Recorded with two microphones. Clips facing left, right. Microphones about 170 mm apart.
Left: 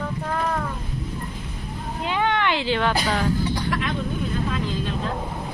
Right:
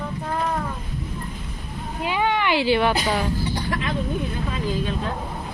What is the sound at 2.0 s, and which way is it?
Cat, 10° right (ahead or behind).